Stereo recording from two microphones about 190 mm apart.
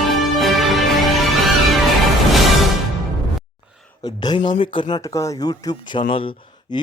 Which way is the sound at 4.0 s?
20° left (ahead or behind).